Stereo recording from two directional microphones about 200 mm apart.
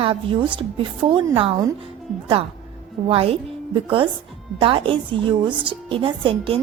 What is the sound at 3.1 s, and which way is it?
Speech, 25° right (ahead or behind).